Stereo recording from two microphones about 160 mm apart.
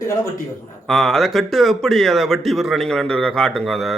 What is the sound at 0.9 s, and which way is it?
Speech, centre (ahead or behind).